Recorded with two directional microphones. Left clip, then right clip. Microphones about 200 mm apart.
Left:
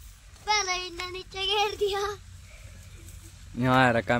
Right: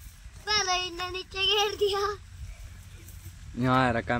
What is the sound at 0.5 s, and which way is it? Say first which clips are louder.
Child singing: even; 5° left (ahead or behind).